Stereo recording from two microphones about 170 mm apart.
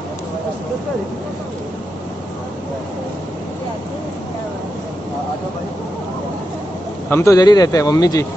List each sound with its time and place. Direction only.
7.1 s a man's voice: 15° left (ahead or behind)